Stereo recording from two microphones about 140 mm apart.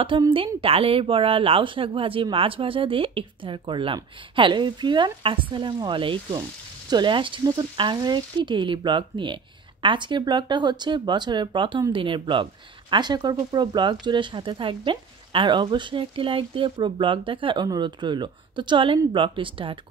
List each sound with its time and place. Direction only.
0.1 s speech: 35° right (ahead or behind)